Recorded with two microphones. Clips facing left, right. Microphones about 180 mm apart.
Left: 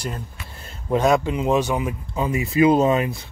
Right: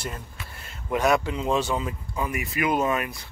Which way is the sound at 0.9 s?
20° left (ahead or behind).